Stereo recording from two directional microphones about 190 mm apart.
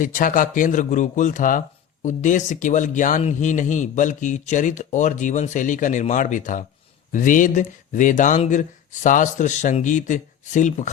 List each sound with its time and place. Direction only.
0.0 s a man's voice: 45° left (ahead or behind)